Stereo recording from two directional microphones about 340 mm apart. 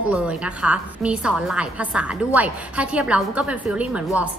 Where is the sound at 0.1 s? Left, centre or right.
Centre.